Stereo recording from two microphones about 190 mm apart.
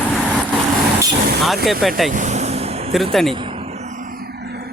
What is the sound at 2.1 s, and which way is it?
Vehicle, 40° right (ahead or behind).